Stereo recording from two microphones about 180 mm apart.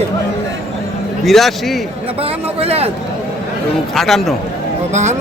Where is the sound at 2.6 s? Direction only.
35° right (ahead or behind).